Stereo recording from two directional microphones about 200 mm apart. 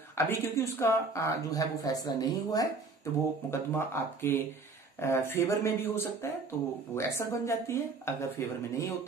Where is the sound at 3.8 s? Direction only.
10° left (ahead or behind).